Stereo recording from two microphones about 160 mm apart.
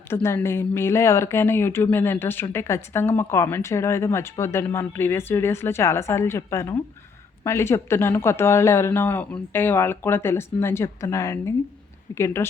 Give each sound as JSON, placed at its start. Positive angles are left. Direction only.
{"t": 0.1, "sound": "speech", "side_deg": 15}